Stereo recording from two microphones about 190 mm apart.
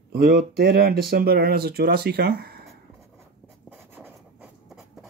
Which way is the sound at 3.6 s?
10° right (ahead or behind).